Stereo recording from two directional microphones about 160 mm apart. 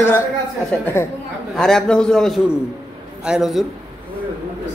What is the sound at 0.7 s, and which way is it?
A man's voice, 10° left (ahead or behind).